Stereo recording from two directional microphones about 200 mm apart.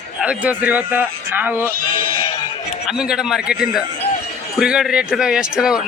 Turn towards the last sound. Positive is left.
turn(degrees=-5)  # may be behind; listen again after turning